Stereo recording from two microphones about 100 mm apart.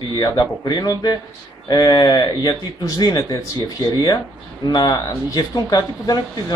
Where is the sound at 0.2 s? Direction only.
45° left (ahead or behind).